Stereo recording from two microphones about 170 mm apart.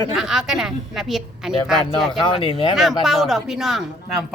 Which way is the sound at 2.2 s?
35° left (ahead or behind).